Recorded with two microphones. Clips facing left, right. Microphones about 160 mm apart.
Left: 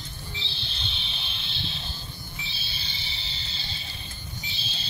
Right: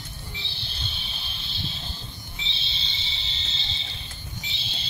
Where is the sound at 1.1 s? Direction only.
40° right (ahead or behind).